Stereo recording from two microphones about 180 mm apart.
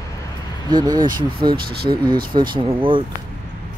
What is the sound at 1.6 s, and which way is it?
Speech, 55° right (ahead or behind).